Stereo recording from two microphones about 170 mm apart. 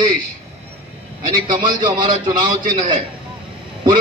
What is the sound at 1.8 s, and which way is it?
Speech, 25° right (ahead or behind).